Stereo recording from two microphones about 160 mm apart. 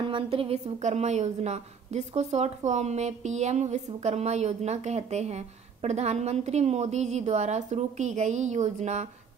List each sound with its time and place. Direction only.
0.0 s a woman's voice: 35° right (ahead or behind)